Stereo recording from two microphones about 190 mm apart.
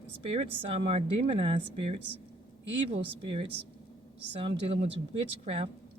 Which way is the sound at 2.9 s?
30° right (ahead or behind).